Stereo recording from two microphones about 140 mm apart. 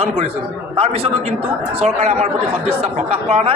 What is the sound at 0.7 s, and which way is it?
A man's voice, 45° right (ahead or behind).